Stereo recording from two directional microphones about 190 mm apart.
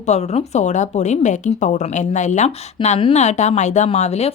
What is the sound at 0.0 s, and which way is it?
Speech, 35° left (ahead or behind).